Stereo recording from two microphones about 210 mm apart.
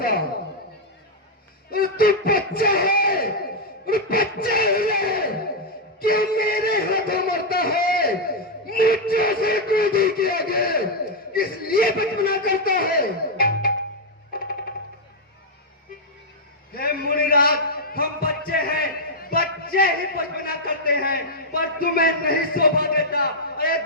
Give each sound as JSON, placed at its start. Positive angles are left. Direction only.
{"t": 1.7, "sound": "a man's voice", "side_deg": 45}
{"t": 3.8, "sound": "a sound", "side_deg": 45}
{"t": 11.3, "sound": "a man's voice", "side_deg": 45}
{"t": 16.7, "sound": "a man's voice", "side_deg": 45}